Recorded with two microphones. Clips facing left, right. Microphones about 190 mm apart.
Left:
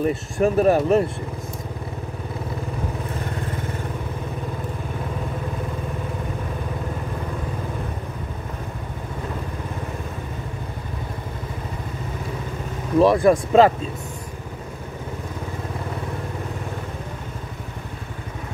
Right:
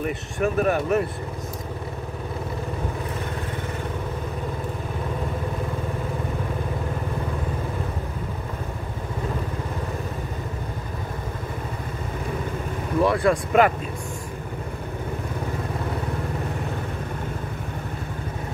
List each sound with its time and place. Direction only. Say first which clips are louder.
0.0 s speech: left 5 dB; 30° left (ahead or behind)
13.0 s speech: left 5 dB; 20° left (ahead or behind)